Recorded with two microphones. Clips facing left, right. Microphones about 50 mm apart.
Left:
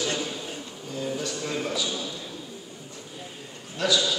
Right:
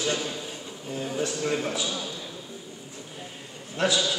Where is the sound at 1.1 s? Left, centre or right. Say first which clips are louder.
Right 7 dB; right.